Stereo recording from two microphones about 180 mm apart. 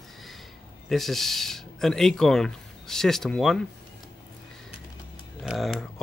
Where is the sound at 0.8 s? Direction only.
Centre (ahead or behind).